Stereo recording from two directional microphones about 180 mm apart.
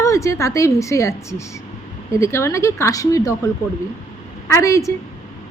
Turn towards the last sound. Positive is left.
turn(degrees=15)  # may be behind; listen again after turning